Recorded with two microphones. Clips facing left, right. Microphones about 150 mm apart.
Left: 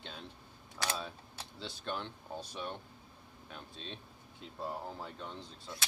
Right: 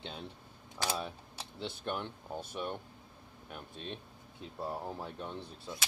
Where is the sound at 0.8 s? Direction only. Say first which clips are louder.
Right 2 dB; 15° right (ahead or behind).